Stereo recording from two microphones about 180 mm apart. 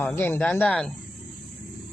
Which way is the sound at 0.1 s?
10° left (ahead or behind).